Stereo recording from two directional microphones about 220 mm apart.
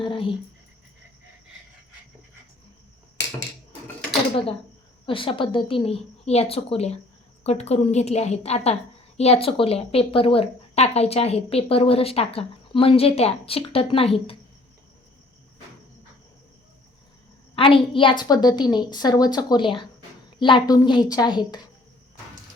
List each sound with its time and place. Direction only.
0.0 s a sound: 25° left (ahead or behind)
5.0 s a woman's voice: 25° left (ahead or behind)
17.5 s a woman's voice: 25° left (ahead or behind)